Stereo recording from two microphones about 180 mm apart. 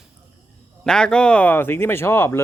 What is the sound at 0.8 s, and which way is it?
Speech, 5° left (ahead or behind).